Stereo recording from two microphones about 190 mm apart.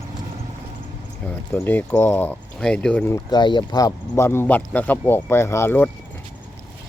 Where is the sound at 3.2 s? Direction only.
25° left (ahead or behind).